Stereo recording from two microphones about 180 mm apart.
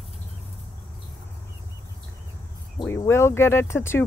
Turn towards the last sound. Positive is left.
turn(degrees=15)  # may be behind; listen again after turning